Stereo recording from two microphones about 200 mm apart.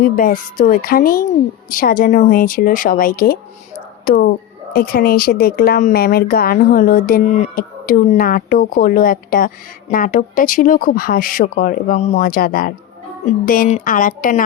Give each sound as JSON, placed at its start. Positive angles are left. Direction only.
{"t": 0.0, "sound": "speech", "side_deg": 45}
{"t": 12.2, "sound": "speech", "side_deg": 45}